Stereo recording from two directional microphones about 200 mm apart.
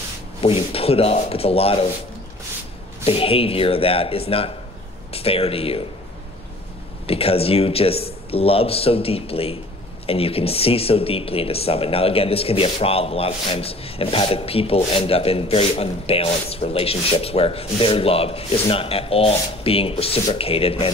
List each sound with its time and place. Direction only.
0.4 s speech: 30° left (ahead or behind)
3.1 s speech: 30° left (ahead or behind)
7.1 s speech: 30° left (ahead or behind)